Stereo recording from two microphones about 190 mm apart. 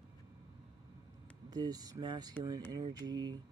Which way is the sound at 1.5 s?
20° right (ahead or behind).